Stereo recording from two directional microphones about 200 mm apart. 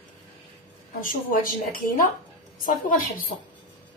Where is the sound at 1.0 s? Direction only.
45° left (ahead or behind).